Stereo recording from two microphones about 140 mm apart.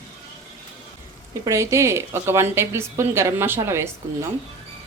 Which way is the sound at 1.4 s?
20° right (ahead or behind).